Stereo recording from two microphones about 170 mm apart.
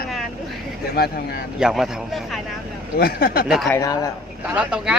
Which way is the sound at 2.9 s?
60° left (ahead or behind).